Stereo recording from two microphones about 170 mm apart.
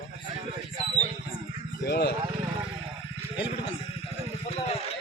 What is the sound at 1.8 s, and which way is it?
Speech, 75° left (ahead or behind).